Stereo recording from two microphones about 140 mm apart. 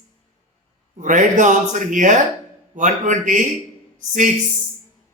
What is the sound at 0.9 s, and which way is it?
Speech, 65° right (ahead or behind).